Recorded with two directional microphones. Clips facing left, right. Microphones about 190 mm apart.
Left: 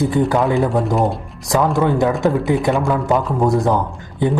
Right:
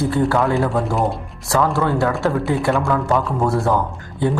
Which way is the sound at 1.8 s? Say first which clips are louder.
Left 3 dB; 15° left (ahead or behind).